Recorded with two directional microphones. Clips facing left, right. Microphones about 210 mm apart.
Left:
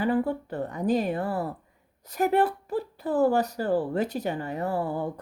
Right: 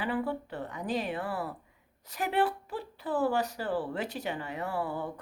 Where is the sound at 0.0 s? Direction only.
40° left (ahead or behind).